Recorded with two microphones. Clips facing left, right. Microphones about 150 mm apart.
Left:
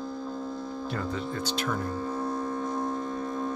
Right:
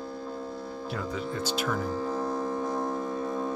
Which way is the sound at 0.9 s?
5° right (ahead or behind).